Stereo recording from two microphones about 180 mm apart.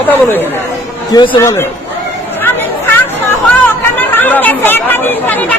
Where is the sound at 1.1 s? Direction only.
25° left (ahead or behind).